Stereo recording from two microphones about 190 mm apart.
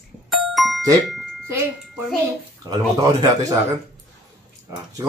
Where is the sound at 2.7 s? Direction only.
20° right (ahead or behind).